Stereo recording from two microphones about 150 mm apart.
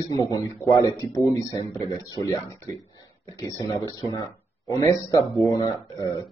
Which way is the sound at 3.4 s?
25° left (ahead or behind).